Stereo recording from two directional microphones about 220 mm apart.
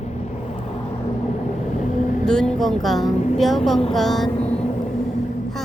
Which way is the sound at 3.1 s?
30° left (ahead or behind).